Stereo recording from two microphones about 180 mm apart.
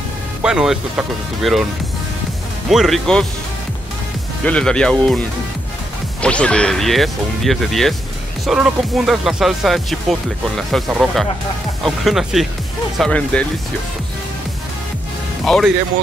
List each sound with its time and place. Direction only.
0.4 s speech: 5° right (ahead or behind)
2.7 s speech: centre (ahead or behind)
4.5 s speech: 5° left (ahead or behind)
6.2 s speech: 5° left (ahead or behind)
15.4 s speech: centre (ahead or behind)